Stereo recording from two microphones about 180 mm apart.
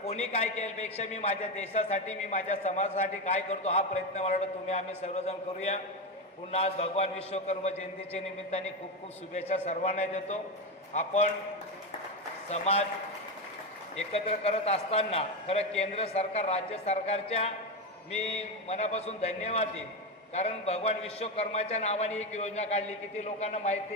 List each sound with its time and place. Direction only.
0.0 s a man's voice: 35° left (ahead or behind)
12.5 s a man's voice: 35° left (ahead or behind)
13.9 s a man's voice: 35° left (ahead or behind)